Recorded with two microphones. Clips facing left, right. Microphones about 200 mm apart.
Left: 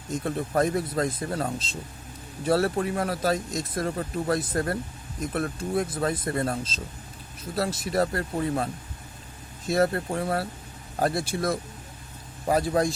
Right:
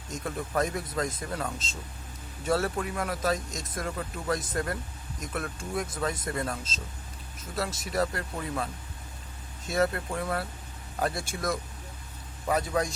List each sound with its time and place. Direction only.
0.3 s speech: 35° left (ahead or behind)